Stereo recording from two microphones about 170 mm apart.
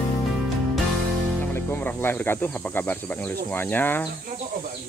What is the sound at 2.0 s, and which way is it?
Speech, 15° left (ahead or behind).